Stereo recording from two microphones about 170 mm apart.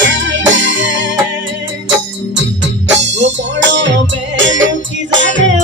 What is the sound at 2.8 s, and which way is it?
Music, 90° right.